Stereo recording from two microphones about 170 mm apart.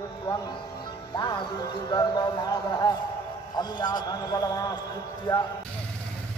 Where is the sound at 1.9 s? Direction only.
25° left (ahead or behind).